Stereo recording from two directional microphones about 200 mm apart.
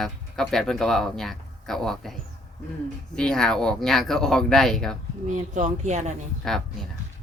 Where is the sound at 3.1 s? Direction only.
5° left (ahead or behind).